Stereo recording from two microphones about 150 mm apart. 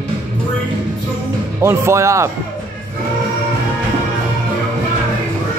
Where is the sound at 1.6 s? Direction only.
20° right (ahead or behind).